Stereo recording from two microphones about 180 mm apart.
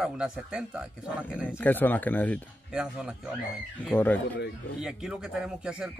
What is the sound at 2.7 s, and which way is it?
Speech, 5° right (ahead or behind).